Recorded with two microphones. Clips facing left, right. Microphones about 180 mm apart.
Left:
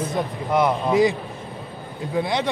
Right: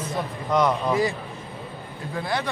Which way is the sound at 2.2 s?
20° left (ahead or behind).